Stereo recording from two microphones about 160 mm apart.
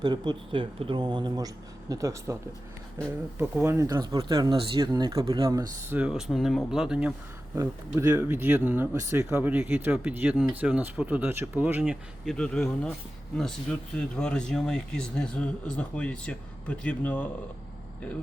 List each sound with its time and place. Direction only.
0.0 s speech: 25° right (ahead or behind)
6.0 s speech: 5° right (ahead or behind)
7.5 s speech: 20° right (ahead or behind); by 17.2 s 10° left (ahead or behind)